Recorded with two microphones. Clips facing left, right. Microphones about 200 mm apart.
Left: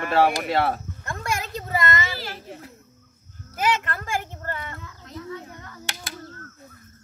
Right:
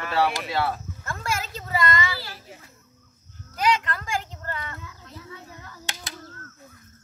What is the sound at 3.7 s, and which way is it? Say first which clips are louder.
Speech: left 1 dB; 50° left (ahead or behind).